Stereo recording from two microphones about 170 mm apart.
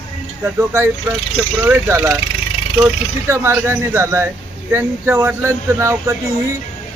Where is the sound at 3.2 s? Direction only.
15° right (ahead or behind).